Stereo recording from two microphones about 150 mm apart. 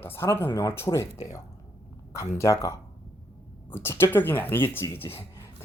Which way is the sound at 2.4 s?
20° left (ahead or behind).